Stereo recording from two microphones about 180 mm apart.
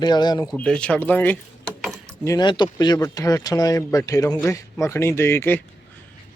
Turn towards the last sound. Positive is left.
turn(degrees=15)  # may be behind; listen again after turning